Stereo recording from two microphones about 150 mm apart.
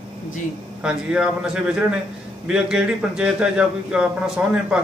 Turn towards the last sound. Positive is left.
turn(degrees=-5)  # may be behind; listen again after turning